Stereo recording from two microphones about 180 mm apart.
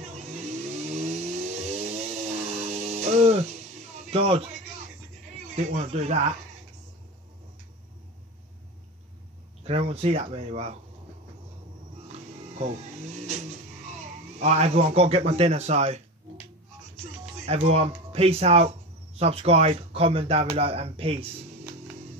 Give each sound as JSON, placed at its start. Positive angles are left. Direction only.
{"t": 0.2, "sound": "vehicle", "side_deg": -40}
{"t": 5.7, "sound": "speech", "side_deg": -40}
{"t": 9.6, "sound": "speech", "side_deg": -35}
{"t": 12.1, "sound": "music", "side_deg": -35}
{"t": 14.4, "sound": "speech", "side_deg": -35}
{"t": 17.5, "sound": "speech", "side_deg": -35}